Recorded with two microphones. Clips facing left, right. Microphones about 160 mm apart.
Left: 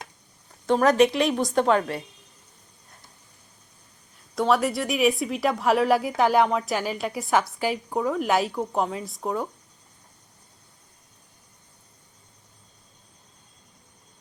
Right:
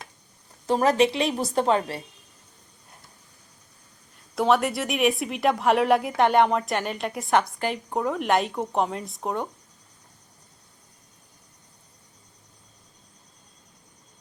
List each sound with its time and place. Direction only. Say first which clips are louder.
0.7 s a woman's voice: left 2 dB; 30° right (ahead or behind)
4.4 s speech: even; centre (ahead or behind)